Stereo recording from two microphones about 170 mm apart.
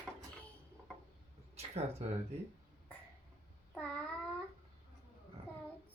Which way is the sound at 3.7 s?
5° left (ahead or behind).